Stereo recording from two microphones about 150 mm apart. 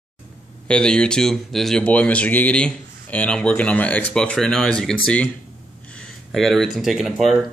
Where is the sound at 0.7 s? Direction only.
5° left (ahead or behind).